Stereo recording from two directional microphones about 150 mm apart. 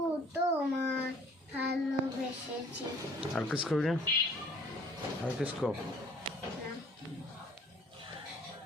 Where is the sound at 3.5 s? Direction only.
5° right (ahead or behind).